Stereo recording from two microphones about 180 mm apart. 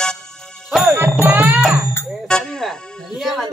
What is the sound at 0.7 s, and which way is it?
Music, 5° right (ahead or behind).